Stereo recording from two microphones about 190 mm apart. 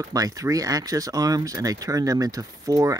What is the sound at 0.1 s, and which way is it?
Speech, 20° right (ahead or behind).